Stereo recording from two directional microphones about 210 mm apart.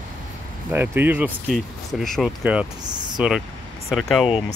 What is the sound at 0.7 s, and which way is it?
Speech, 10° right (ahead or behind).